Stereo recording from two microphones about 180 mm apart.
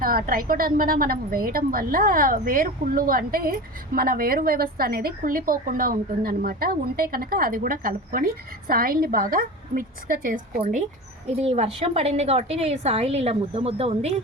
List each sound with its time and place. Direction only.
0.0 s a woman's voice: 55° right (ahead or behind)
11.3 s a woman's voice: 35° right (ahead or behind)